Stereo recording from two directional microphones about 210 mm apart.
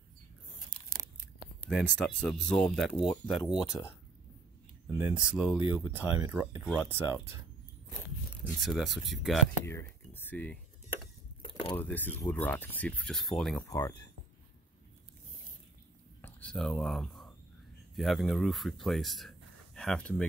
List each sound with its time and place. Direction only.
1.6 s speech: 5° left (ahead or behind)
4.9 s speech: 5° right (ahead or behind)
8.5 s speech: centre (ahead or behind)
9.7 s speech: 10° left (ahead or behind)
11.7 s speech: 10° left (ahead or behind)
13.6 s speech: 15° left (ahead or behind)
16.2 s a sound: 10° left (ahead or behind)
17.9 s speech: centre (ahead or behind)